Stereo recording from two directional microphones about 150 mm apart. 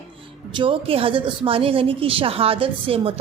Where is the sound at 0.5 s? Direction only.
35° right (ahead or behind).